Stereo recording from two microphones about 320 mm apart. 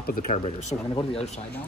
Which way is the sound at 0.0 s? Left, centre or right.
Left.